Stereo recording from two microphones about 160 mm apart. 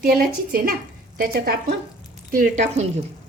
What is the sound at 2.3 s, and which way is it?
Speech, 50° right (ahead or behind).